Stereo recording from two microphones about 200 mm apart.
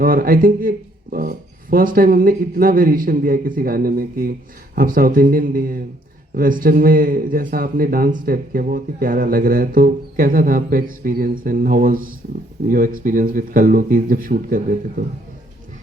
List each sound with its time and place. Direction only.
0.0 s speech: 45° right (ahead or behind)